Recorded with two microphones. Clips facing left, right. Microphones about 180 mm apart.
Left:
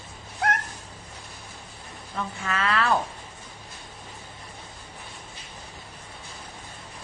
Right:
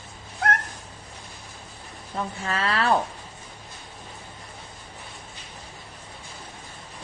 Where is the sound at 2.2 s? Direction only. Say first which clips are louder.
Right 1 dB; 35° right (ahead or behind).